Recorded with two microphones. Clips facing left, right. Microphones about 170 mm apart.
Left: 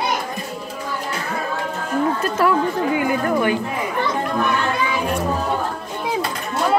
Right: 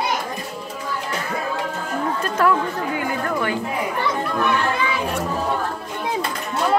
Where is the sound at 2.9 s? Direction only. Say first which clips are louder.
Left 4 dB; 15° left (ahead or behind).